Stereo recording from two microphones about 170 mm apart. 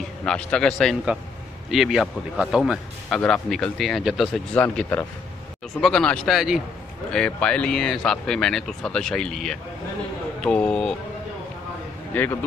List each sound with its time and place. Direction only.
0.2 s speech: 5° left (ahead or behind)
4.6 s speech: 10° left (ahead or behind)
12.1 s a man's voice: 10° left (ahead or behind)